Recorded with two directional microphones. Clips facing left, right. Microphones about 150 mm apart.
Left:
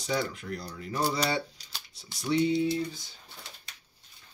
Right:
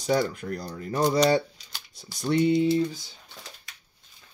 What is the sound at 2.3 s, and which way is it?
Speech, 55° right (ahead or behind).